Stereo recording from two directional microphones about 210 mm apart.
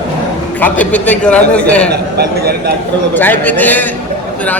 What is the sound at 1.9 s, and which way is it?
Speech, 50° right (ahead or behind).